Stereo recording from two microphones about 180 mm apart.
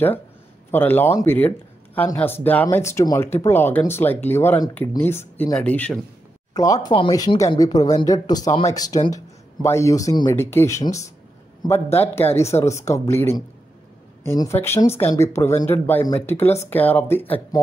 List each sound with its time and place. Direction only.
0.7 s speech: 10° left (ahead or behind)
6.5 s speech: 20° left (ahead or behind)